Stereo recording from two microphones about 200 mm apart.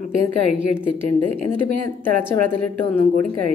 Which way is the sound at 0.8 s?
10° left (ahead or behind).